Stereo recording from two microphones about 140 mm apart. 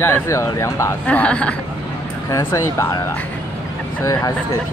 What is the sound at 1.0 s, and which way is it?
Speech, 10° left (ahead or behind).